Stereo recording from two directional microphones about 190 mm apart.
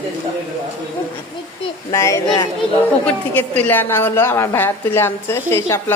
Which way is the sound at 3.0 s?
5° left (ahead or behind).